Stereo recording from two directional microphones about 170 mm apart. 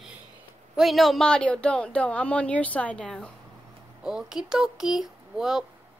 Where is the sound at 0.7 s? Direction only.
Centre (ahead or behind).